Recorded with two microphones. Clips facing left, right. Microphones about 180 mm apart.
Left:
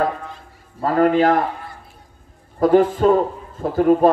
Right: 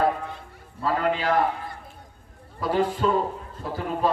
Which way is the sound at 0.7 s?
50° left (ahead or behind).